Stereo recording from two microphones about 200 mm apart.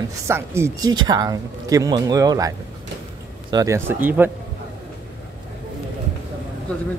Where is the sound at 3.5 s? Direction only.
15° right (ahead or behind).